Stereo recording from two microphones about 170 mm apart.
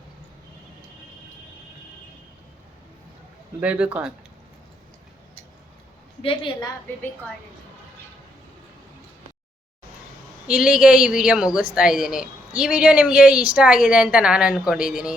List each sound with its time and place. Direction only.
3.6 s speech: 5° right (ahead or behind)
6.2 s a woman's voice: 30° left (ahead or behind)
10.4 s a woman's voice: 5° right (ahead or behind)